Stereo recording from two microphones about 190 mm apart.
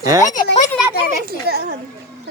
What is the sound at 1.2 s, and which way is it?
Speech, 55° right (ahead or behind).